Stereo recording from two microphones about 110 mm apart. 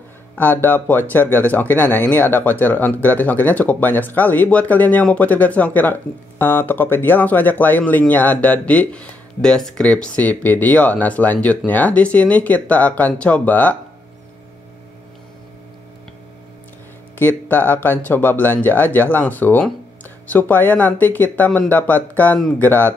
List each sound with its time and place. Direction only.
0.4 s speech: 15° left (ahead or behind)
17.2 s speech: 15° left (ahead or behind)